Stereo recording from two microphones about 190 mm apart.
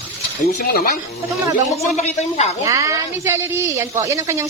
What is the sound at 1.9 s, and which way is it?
Speech, 35° left (ahead or behind).